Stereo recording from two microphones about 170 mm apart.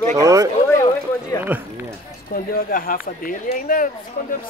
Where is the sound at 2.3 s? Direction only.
60° left (ahead or behind).